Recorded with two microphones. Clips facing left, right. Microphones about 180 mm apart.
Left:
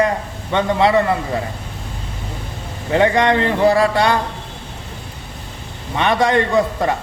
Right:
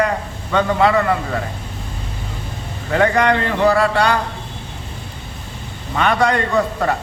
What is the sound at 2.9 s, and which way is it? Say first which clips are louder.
Speech: left 1 dB; 20° left (ahead or behind).